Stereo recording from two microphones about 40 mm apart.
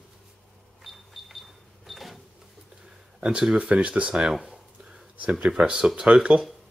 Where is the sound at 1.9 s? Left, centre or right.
Centre.